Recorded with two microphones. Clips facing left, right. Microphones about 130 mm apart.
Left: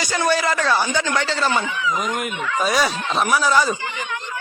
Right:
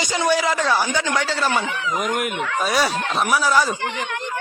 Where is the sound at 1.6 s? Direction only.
60° right (ahead or behind).